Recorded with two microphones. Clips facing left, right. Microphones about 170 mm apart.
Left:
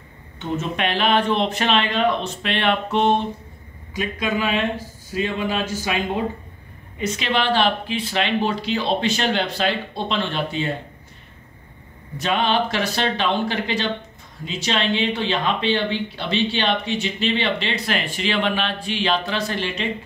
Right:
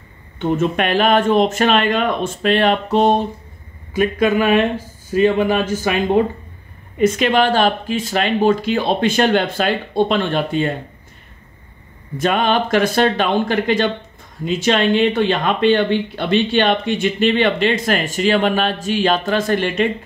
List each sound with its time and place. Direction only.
0.4 s speech: 50° right (ahead or behind)
3.9 s a man's voice: 55° right (ahead or behind)
12.2 s speech: 50° right (ahead or behind)